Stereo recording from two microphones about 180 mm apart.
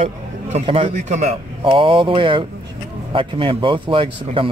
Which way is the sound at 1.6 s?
30° right (ahead or behind).